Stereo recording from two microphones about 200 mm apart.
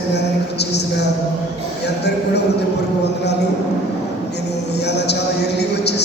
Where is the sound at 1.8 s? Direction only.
55° left (ahead or behind).